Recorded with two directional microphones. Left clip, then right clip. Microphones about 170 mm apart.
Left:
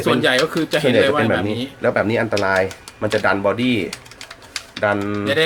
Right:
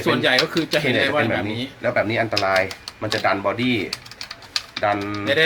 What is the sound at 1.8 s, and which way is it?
Speech, 65° left (ahead or behind).